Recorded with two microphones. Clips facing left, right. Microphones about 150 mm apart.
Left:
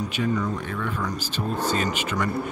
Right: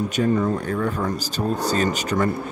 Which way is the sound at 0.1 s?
40° right (ahead or behind).